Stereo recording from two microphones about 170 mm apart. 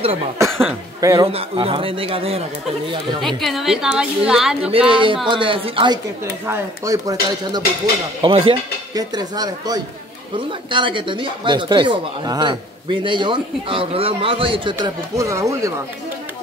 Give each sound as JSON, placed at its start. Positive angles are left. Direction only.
{"t": 1.0, "sound": "a man's voice", "side_deg": -30}
{"t": 3.2, "sound": "a woman's voice", "side_deg": 0}
{"t": 4.6, "sound": "a man's voice", "side_deg": -30}
{"t": 6.4, "sound": "speech", "side_deg": -15}